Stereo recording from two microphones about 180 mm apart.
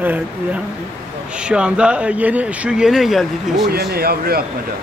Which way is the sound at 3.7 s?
60° right (ahead or behind).